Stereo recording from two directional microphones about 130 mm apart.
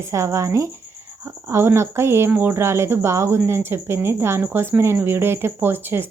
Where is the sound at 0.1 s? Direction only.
20° right (ahead or behind).